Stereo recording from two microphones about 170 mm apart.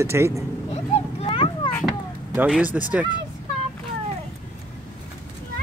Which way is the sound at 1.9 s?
5° right (ahead or behind).